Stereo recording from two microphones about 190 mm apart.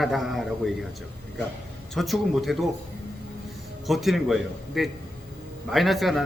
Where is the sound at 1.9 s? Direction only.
Centre (ahead or behind).